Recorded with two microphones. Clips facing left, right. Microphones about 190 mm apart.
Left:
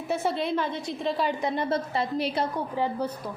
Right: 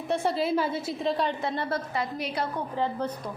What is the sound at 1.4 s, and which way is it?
Speech, 15° left (ahead or behind).